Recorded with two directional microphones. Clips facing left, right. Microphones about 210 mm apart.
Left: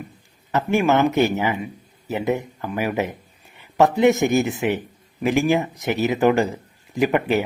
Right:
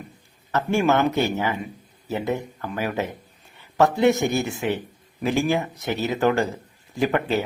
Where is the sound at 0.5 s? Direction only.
15° left (ahead or behind).